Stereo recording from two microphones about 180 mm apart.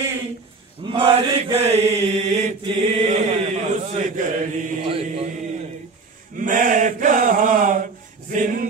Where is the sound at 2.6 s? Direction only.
35° right (ahead or behind).